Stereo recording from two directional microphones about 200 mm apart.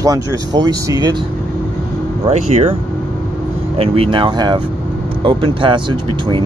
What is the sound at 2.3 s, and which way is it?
Speech, 30° right (ahead or behind).